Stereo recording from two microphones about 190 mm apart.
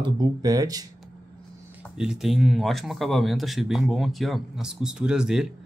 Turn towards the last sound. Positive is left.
turn(degrees=-5)  # may be behind; listen again after turning